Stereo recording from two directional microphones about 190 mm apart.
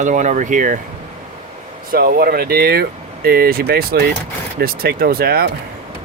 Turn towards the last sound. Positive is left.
turn(degrees=-55)  # may be behind; listen again after turning